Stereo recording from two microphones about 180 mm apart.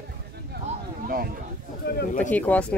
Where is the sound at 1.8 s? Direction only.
55° left (ahead or behind).